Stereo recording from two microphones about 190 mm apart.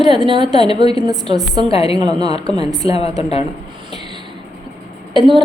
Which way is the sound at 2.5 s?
20° right (ahead or behind).